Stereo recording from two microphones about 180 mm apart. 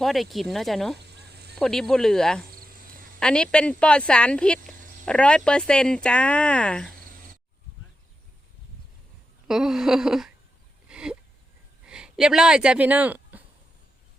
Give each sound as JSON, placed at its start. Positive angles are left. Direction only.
{"t": 0.0, "sound": "speech", "side_deg": 0}
{"t": 0.9, "sound": "fowl", "side_deg": -65}
{"t": 1.5, "sound": "speech", "side_deg": 0}
{"t": 9.5, "sound": "speech", "side_deg": -5}
{"t": 10.8, "sound": "a sound", "side_deg": -5}
{"t": 11.9, "sound": "speech", "side_deg": -5}